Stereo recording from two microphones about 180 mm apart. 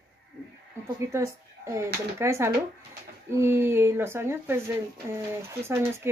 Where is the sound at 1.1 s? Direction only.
15° right (ahead or behind).